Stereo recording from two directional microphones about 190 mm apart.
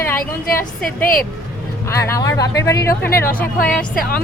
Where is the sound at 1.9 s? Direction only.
15° left (ahead or behind).